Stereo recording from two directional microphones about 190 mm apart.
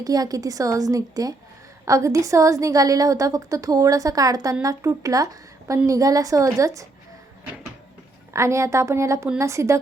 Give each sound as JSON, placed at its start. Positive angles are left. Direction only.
{"t": 0.0, "sound": "a woman's voice", "side_deg": -20}
{"t": 8.3, "sound": "a woman's voice", "side_deg": -15}